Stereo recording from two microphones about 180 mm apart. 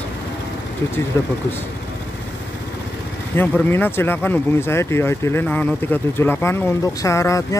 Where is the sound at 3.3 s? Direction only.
10° left (ahead or behind).